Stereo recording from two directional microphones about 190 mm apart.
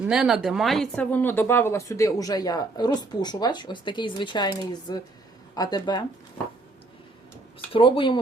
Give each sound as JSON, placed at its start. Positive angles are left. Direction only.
{"t": 0.0, "sound": "speech", "side_deg": -5}
{"t": 7.7, "sound": "speech", "side_deg": 25}